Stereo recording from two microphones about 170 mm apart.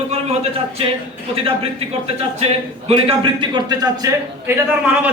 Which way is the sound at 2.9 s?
30° right (ahead or behind).